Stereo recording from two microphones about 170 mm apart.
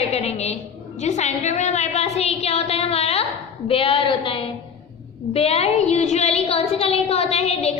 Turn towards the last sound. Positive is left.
turn(degrees=40)  # may be behind; listen again after turning